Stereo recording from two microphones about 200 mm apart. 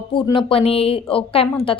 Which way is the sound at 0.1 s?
25° left (ahead or behind).